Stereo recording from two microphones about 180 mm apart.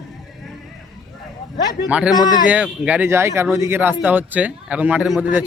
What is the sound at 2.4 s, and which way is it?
A man's voice, 5° right (ahead or behind).